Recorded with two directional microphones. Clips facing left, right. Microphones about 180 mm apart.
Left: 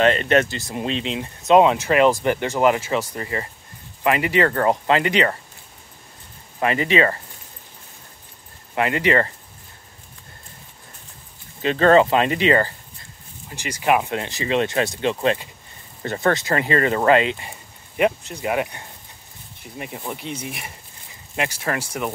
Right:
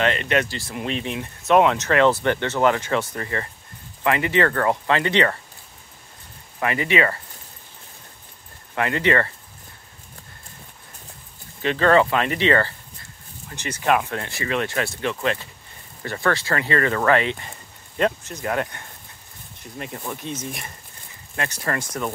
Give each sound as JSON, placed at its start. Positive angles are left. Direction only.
{"t": 0.1, "sound": "speech", "side_deg": 40}
{"t": 0.5, "sound": "speech", "side_deg": 20}
{"t": 4.5, "sound": "speech", "side_deg": 25}
{"t": 6.6, "sound": "speech", "side_deg": 30}
{"t": 8.7, "sound": "speech", "side_deg": 20}
{"t": 11.6, "sound": "speech", "side_deg": 35}